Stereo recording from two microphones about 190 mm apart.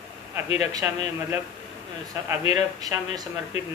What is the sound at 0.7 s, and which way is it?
Speech, 15° right (ahead or behind).